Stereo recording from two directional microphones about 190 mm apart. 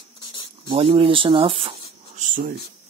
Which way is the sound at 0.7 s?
30° right (ahead or behind).